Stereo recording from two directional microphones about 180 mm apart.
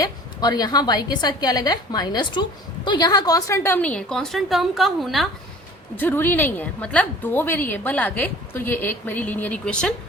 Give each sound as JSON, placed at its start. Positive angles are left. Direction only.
{"t": 0.0, "sound": "a woman's voice", "side_deg": 20}
{"t": 6.0, "sound": "a woman's voice", "side_deg": 10}